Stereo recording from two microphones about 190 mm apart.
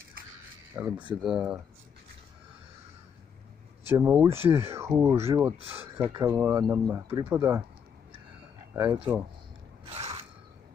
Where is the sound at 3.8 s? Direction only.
10° right (ahead or behind).